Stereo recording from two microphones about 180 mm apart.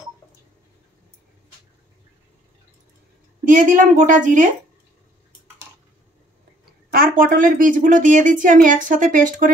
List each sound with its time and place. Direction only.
3.4 s a woman's voice: 50° right (ahead or behind)
6.9 s a woman's voice: 50° right (ahead or behind)